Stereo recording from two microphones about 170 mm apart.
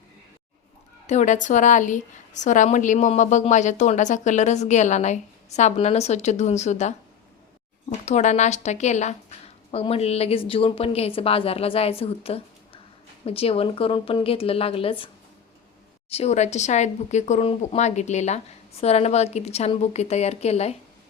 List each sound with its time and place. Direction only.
1.0 s a woman's voice: 45° left (ahead or behind)